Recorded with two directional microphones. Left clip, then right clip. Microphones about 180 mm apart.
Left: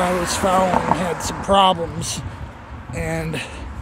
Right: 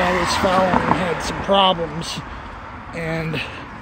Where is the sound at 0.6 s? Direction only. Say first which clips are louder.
Even; 50° right (ahead or behind).